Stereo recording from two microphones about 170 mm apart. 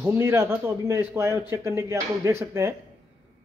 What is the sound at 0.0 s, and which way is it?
A man's voice, 15° right (ahead or behind).